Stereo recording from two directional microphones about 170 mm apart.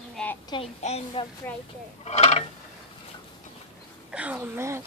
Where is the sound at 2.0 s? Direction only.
40° left (ahead or behind).